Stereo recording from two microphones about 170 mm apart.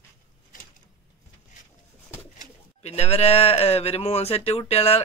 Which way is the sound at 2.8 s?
40° left (ahead or behind).